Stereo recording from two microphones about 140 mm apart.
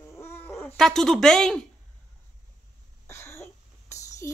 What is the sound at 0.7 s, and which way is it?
Speech, 5° left (ahead or behind).